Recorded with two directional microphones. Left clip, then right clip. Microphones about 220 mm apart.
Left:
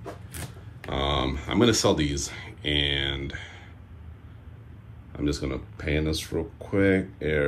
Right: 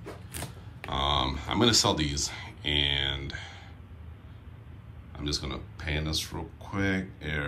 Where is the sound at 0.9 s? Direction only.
15° right (ahead or behind).